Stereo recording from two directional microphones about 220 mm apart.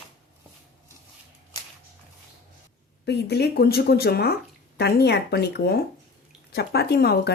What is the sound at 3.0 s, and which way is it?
Speech, 50° left (ahead or behind).